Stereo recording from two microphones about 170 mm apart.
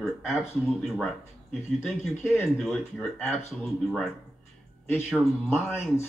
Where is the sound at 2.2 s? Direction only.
15° left (ahead or behind).